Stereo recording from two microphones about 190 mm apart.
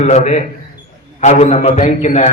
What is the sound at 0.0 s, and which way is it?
A man's voice, 35° left (ahead or behind).